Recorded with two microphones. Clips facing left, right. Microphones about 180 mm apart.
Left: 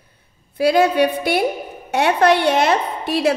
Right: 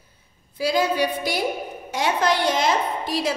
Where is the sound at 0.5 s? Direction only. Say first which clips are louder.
Left 7 dB; 60° left (ahead or behind).